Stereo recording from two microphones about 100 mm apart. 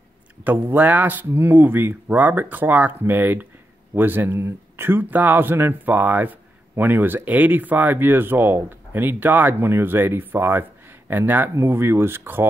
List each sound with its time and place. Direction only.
0.4 s speech: 15° right (ahead or behind)